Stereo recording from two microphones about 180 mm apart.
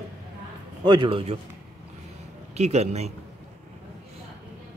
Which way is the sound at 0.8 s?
25° right (ahead or behind).